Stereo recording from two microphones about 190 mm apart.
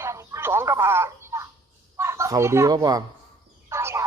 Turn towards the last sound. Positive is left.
turn(degrees=-15)  # may be behind; listen again after turning